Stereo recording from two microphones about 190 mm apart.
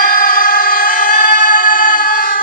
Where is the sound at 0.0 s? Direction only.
45° left (ahead or behind).